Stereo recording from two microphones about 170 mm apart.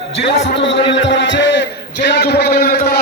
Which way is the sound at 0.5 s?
90° left.